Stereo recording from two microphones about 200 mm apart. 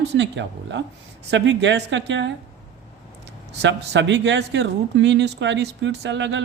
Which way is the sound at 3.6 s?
65° right (ahead or behind).